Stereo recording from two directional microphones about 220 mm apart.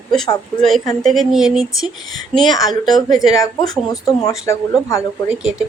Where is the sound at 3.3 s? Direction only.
15° left (ahead or behind).